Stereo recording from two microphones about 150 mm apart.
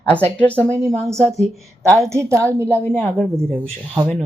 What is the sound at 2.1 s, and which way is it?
Speech, 20° right (ahead or behind).